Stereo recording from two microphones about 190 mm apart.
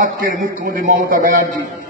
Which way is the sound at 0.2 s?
45° right (ahead or behind).